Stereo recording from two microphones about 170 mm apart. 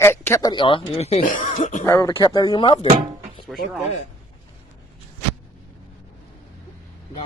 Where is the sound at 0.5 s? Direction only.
30° left (ahead or behind); by 1.7 s 45° left (ahead or behind).